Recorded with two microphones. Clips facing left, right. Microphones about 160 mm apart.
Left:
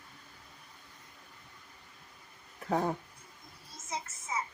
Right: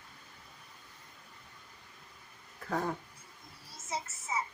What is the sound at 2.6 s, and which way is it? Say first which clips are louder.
Speech: left 3 dB; 20° left (ahead or behind).